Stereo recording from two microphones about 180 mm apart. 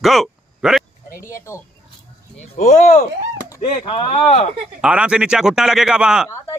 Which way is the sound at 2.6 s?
40° left (ahead or behind).